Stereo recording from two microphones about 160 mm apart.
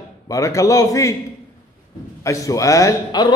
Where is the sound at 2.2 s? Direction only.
20° left (ahead or behind).